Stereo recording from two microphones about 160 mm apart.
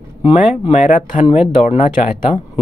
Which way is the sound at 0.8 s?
55° left (ahead or behind).